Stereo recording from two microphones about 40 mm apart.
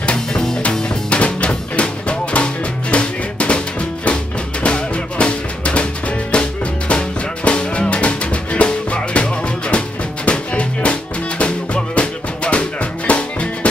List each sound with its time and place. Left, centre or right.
0.0 s music: centre
1.1 s music: left